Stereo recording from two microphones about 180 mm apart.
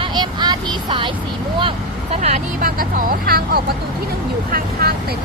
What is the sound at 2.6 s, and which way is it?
Speech, 50° right (ahead or behind).